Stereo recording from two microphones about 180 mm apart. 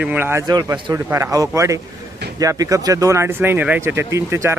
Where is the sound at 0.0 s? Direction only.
10° right (ahead or behind).